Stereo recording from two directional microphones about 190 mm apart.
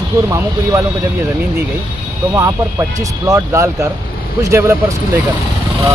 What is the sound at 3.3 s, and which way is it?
Speech, 15° right (ahead or behind).